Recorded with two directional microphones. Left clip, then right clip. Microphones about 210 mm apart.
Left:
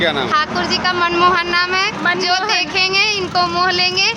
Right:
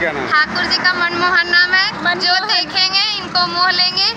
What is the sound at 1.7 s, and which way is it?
Speech, 55° left (ahead or behind).